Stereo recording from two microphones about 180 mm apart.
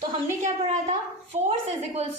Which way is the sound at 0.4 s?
40° right (ahead or behind).